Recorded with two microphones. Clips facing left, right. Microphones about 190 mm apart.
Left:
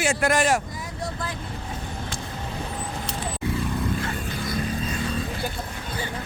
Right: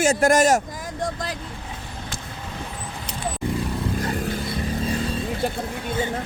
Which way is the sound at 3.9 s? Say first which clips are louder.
Right 4 dB; 35° right (ahead or behind).